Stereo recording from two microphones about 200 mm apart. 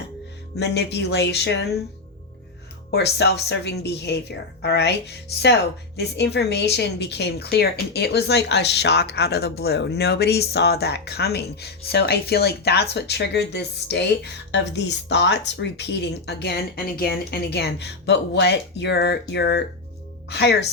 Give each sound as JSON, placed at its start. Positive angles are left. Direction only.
{"t": 0.5, "sound": "speech", "side_deg": 60}
{"t": 2.9, "sound": "speech", "side_deg": 55}